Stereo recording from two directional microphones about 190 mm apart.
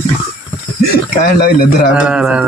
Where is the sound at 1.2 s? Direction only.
55° left (ahead or behind).